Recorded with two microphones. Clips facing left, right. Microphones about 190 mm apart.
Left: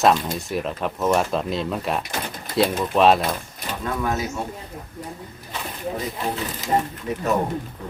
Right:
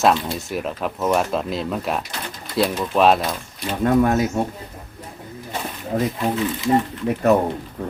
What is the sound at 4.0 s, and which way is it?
Speech, 55° right (ahead or behind).